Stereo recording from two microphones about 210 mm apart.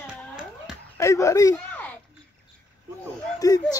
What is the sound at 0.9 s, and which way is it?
Speech, 15° left (ahead or behind).